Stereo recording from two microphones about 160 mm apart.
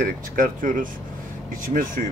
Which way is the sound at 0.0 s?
55° right (ahead or behind).